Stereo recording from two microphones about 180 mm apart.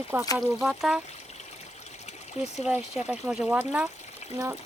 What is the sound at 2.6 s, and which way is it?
Speech, 5° right (ahead or behind).